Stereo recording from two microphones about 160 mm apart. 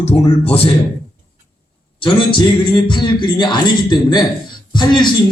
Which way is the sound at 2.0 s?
30° left (ahead or behind).